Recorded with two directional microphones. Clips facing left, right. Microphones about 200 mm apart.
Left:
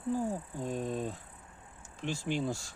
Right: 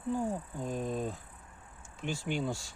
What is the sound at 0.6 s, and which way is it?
Speech, centre (ahead or behind).